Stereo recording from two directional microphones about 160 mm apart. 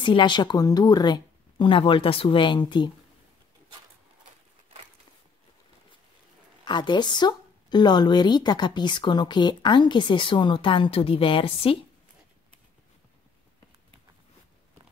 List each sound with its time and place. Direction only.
0.0 s a woman's voice: 30° left (ahead or behind)
6.6 s a woman's voice: 30° left (ahead or behind)